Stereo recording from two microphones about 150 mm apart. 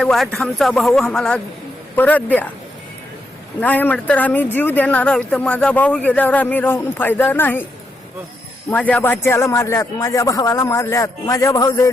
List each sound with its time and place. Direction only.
0.0 s speech: 5° left (ahead or behind)
3.6 s speech: 10° left (ahead or behind)
8.7 s speech: 10° left (ahead or behind); by 11.9 s 25° left (ahead or behind)